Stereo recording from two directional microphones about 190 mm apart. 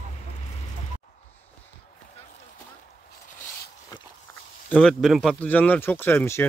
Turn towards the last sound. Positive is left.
turn(degrees=10)  # may be behind; listen again after turning